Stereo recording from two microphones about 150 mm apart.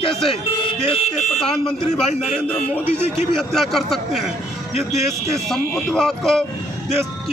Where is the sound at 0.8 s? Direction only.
45° left (ahead or behind).